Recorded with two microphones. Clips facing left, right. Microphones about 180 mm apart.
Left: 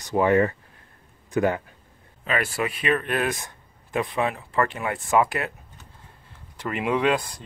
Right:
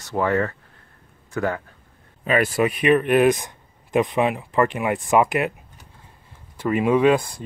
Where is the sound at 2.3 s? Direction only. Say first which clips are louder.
Right 6 dB; 20° right (ahead or behind).